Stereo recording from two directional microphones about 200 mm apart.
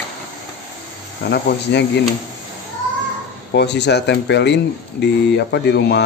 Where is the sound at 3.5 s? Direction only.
60° left (ahead or behind).